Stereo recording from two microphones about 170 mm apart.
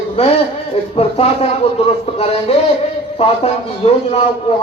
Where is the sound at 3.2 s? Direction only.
40° left (ahead or behind).